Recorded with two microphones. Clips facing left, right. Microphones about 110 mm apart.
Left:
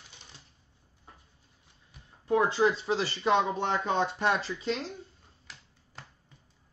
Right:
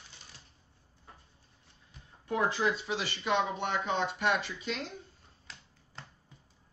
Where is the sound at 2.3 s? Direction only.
30° left (ahead or behind).